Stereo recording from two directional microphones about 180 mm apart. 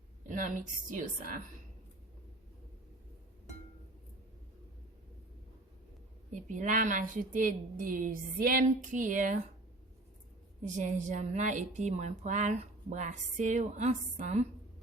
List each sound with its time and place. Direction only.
0.3 s a woman's voice: 45° right (ahead or behind)
6.3 s a woman's voice: 45° right (ahead or behind)
10.6 s a woman's voice: 45° right (ahead or behind)